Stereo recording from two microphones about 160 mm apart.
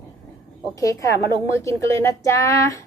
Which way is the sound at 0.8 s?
20° left (ahead or behind).